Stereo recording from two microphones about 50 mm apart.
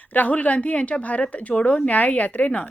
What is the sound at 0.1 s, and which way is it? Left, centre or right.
A woman's voice, left.